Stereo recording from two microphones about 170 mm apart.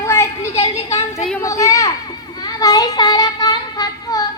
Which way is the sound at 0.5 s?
35° left (ahead or behind).